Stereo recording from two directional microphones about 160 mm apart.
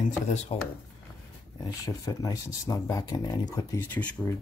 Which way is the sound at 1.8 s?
20° left (ahead or behind).